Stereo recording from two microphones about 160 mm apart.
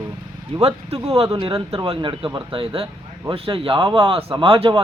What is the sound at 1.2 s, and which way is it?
Speech, 25° right (ahead or behind).